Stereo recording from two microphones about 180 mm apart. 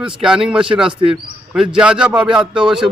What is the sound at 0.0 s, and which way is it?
A man's voice, 5° right (ahead or behind).